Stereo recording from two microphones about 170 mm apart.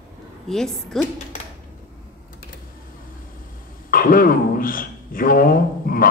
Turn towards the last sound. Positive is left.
turn(degrees=55)  # may be behind; listen again after turning